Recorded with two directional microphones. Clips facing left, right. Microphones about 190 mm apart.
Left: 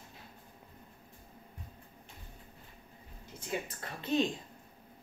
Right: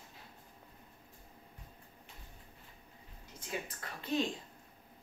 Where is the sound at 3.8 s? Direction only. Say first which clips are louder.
Left 4 dB; 25° left (ahead or behind).